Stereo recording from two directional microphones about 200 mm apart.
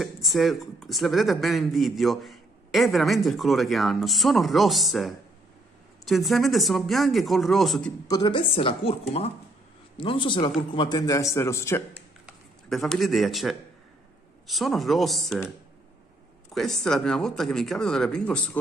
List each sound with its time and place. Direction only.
0.0 s speech: centre (ahead or behind)
8.1 s a man's voice: 20° left (ahead or behind)
11.9 s a sound: centre (ahead or behind)
14.5 s speech: centre (ahead or behind)
16.5 s speech: centre (ahead or behind)